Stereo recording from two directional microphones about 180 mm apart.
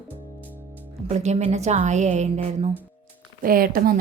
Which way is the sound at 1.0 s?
40° right (ahead or behind).